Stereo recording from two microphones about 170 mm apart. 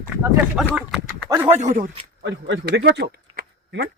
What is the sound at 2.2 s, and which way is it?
Speech, 90° right.